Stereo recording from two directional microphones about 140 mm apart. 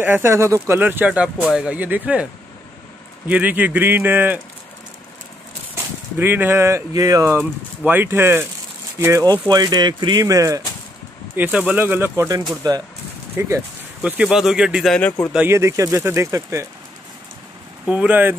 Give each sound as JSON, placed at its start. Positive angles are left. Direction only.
{"t": 0.0, "sound": "speech", "side_deg": -15}
{"t": 3.3, "sound": "speech", "side_deg": -10}
{"t": 6.1, "sound": "speech", "side_deg": -15}
{"t": 11.3, "sound": "speech", "side_deg": -10}
{"t": 14.0, "sound": "speech", "side_deg": -5}
{"t": 15.3, "sound": "speech", "side_deg": -15}
{"t": 17.8, "sound": "speech", "side_deg": -10}